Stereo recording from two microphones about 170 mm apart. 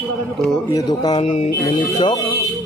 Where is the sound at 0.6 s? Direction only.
20° left (ahead or behind).